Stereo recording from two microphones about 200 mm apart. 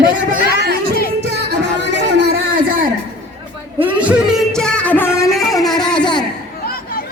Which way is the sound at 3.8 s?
10° right (ahead or behind).